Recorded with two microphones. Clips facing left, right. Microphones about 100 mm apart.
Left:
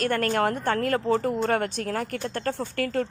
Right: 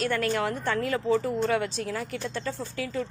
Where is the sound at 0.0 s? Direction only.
50° left (ahead or behind).